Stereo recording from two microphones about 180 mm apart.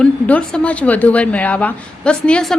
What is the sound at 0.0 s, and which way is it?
A woman's voice, 5° left (ahead or behind).